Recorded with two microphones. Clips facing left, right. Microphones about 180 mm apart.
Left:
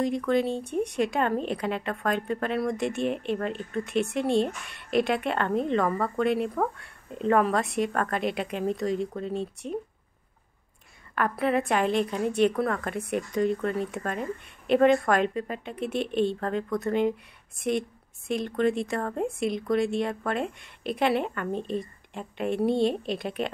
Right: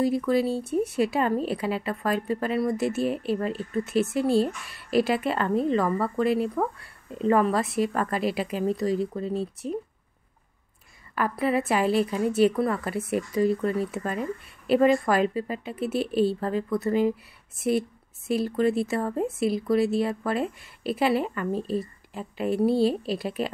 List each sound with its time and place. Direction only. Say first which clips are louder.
0.0 s speech: right 2 dB; 5° right (ahead or behind)
11.1 s speech: right 1 dB; 5° right (ahead or behind)